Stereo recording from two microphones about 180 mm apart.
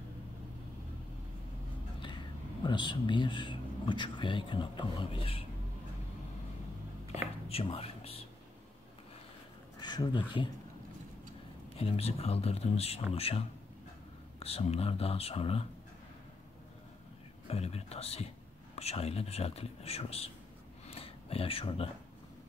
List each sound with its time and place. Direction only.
2.0 s speech: 25° left (ahead or behind)
7.2 s whispering: 35° left (ahead or behind)
9.8 s speech: 25° left (ahead or behind)
11.7 s speech: 35° left (ahead or behind)
17.5 s speech: 35° left (ahead or behind)
20.9 s a sound: 30° left (ahead or behind)